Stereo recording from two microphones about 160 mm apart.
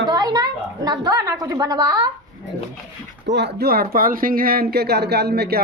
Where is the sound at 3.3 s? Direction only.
80° right.